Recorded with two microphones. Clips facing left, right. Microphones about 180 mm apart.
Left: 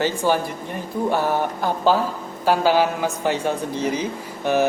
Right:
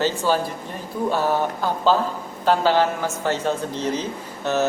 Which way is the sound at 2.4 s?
10° left (ahead or behind).